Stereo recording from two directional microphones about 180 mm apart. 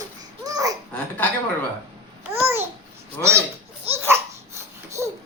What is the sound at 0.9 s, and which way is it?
Speech, 5° left (ahead or behind).